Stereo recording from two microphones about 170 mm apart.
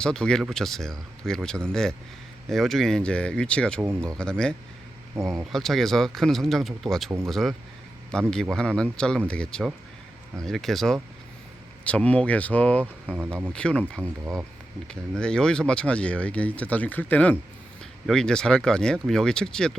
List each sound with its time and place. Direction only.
0.0 s speech: 5° left (ahead or behind)
3.8 s speech: 15° right (ahead or behind)
4.2 s speech: 5° left (ahead or behind)
5.2 s speech: 15° right (ahead or behind)
5.5 s speech: centre (ahead or behind)